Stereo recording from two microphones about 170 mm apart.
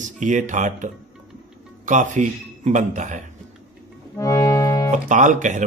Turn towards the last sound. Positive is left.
turn(degrees=-50)  # may be behind; listen again after turning